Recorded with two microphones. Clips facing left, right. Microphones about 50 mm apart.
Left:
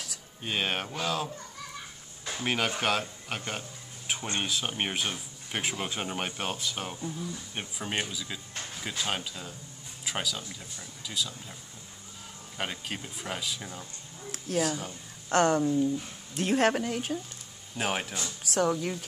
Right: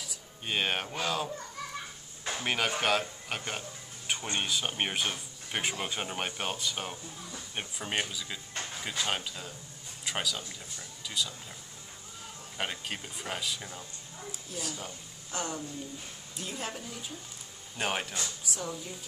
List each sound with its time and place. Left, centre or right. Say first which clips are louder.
0.4 s speech: even; centre
2.4 s speech: left 1 dB; centre
12.5 s speech: left 1 dB; centre
15.2 s a woman's voice: left 13 dB; left
17.7 s speech: left 2 dB; centre
18.4 s a woman's voice: left 10 dB; left